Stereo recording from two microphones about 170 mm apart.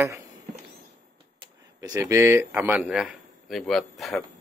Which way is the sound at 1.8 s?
15° right (ahead or behind).